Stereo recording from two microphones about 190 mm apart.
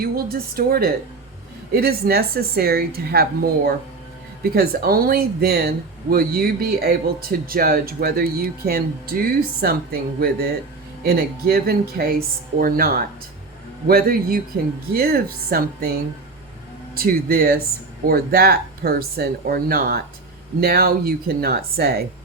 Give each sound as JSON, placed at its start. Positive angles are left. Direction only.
{"t": 0.0, "sound": "speech", "side_deg": -50}
{"t": 16.9, "sound": "speech", "side_deg": -50}